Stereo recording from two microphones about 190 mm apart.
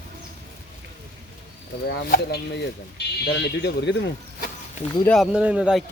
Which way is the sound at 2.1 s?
55° left (ahead or behind).